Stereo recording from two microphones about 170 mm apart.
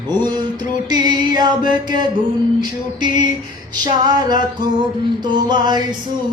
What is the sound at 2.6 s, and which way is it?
Mantra, 25° right (ahead or behind).